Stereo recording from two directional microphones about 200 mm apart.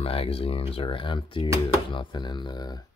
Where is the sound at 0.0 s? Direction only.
30° left (ahead or behind).